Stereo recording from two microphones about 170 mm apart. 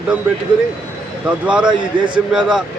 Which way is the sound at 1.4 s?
5° right (ahead or behind).